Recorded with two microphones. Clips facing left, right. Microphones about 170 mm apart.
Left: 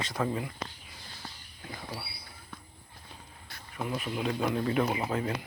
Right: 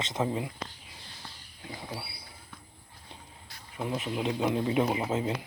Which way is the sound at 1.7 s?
15° right (ahead or behind).